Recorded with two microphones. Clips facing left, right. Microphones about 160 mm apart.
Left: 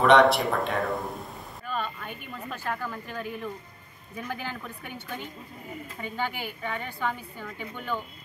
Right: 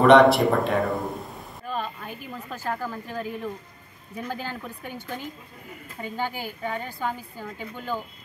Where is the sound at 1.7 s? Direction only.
35° right (ahead or behind).